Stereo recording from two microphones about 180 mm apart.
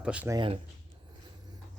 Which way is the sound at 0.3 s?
25° right (ahead or behind).